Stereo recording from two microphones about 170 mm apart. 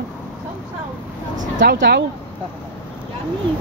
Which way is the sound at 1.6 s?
80° right.